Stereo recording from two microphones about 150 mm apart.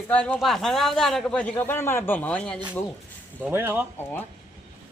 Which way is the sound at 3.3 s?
10° right (ahead or behind).